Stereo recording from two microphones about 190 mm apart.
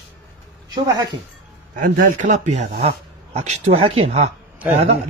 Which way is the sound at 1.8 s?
45° right (ahead or behind).